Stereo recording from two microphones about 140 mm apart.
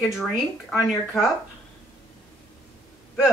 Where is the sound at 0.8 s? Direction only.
5° right (ahead or behind).